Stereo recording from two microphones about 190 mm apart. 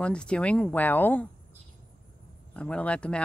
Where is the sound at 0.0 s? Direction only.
5° left (ahead or behind).